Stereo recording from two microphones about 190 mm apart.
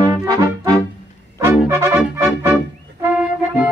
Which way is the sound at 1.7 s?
15° right (ahead or behind).